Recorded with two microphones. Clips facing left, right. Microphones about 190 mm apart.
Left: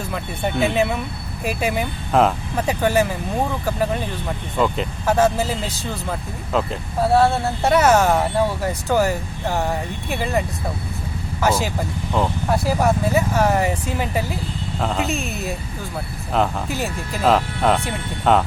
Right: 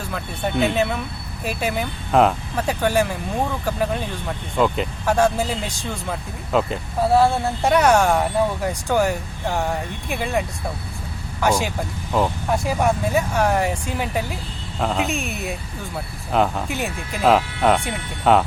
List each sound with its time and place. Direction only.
0.1 s speech: 5° left (ahead or behind)